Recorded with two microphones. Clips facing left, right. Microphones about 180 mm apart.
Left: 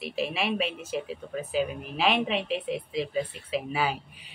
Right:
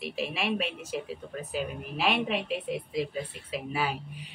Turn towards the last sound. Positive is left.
turn(degrees=0)  # may be behind; listen again after turning